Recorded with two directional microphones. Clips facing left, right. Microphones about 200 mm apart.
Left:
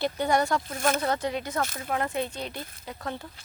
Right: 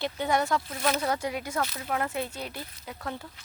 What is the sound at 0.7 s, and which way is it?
Speech, 50° left (ahead or behind).